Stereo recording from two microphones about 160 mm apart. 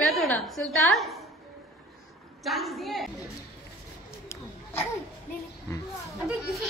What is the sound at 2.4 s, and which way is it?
Speech, centre (ahead or behind).